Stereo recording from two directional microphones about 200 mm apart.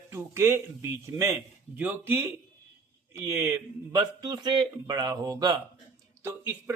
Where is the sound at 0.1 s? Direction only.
10° right (ahead or behind).